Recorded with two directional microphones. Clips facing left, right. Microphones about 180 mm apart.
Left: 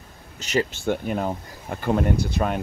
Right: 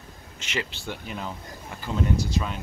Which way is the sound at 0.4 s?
40° left (ahead or behind).